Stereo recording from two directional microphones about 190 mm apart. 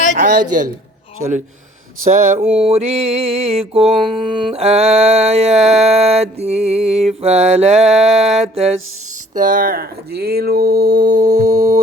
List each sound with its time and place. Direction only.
0.2 s speech: 45° right (ahead or behind)
2.0 s mantra: 40° right (ahead or behind)
9.3 s speech: 45° right (ahead or behind)